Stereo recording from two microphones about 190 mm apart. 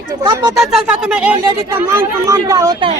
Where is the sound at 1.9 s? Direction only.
15° right (ahead or behind).